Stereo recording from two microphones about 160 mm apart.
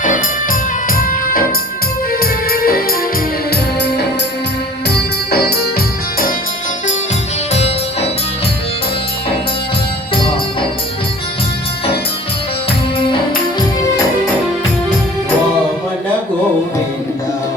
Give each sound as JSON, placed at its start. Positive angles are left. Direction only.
{"t": 0.9, "sound": "music", "side_deg": 65}
{"t": 3.5, "sound": "music", "side_deg": 90}
{"t": 7.5, "sound": "music", "side_deg": 40}